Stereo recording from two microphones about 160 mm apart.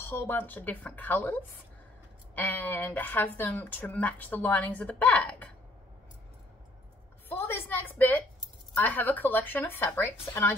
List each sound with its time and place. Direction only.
0.0 s speech: 15° left (ahead or behind)
7.2 s a sound: 15° left (ahead or behind)
8.7 s speech: 10° left (ahead or behind)